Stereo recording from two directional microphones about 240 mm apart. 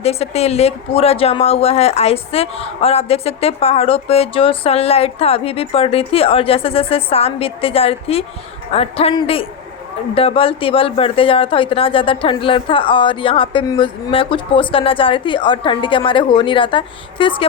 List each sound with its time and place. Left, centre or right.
0.0 s speech: left